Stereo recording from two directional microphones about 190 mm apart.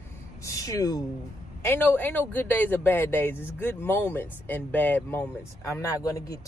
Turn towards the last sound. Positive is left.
turn(degrees=20)  # may be behind; listen again after turning